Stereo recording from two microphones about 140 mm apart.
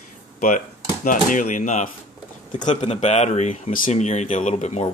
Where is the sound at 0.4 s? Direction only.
65° left (ahead or behind).